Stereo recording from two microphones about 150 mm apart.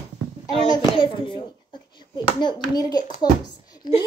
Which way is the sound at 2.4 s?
30° left (ahead or behind).